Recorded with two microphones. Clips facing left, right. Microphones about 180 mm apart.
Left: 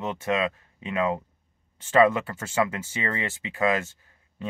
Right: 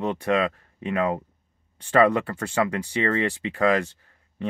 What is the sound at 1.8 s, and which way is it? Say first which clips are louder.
Speech: right 1 dB; 20° left (ahead or behind).